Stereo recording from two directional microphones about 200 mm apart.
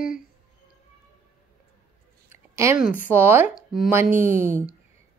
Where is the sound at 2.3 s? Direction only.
15° right (ahead or behind).